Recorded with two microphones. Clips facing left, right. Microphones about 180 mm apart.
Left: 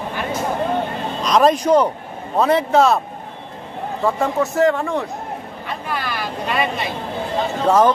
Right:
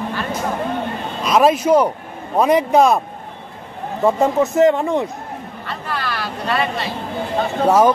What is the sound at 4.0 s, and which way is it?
A man's voice, 20° right (ahead or behind).